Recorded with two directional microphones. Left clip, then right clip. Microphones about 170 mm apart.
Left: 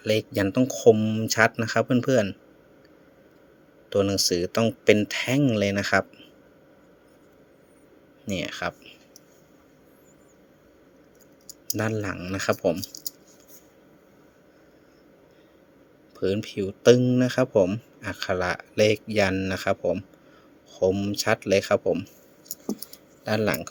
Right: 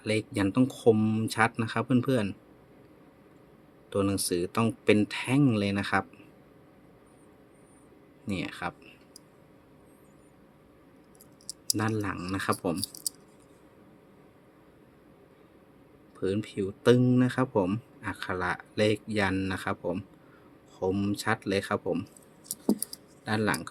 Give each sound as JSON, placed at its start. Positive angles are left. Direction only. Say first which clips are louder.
{"t": 0.0, "sound": "a man's voice", "louder": "left 5 dB", "side_deg": 25}
{"t": 3.8, "sound": "a man's voice", "louder": "left 6 dB", "side_deg": 20}
{"t": 8.3, "sound": "speech", "louder": "left 5 dB", "side_deg": 25}
{"t": 11.8, "sound": "a man's voice", "louder": "left 5 dB", "side_deg": 25}
{"t": 16.1, "sound": "a man's voice", "louder": "left 4 dB", "side_deg": 25}
{"t": 23.2, "sound": "a man's voice", "louder": "left 4 dB", "side_deg": 25}